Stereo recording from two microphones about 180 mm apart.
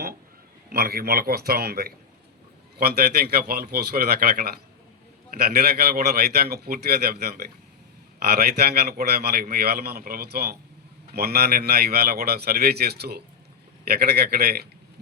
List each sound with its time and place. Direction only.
0.7 s a man's voice: 55° right (ahead or behind)